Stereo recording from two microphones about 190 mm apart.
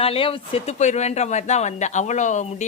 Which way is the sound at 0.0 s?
30° left (ahead or behind).